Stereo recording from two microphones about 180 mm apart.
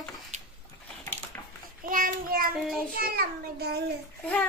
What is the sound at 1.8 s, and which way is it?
Child singing, 50° right (ahead or behind).